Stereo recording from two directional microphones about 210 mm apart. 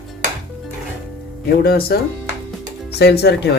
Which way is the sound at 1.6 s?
45° left (ahead or behind).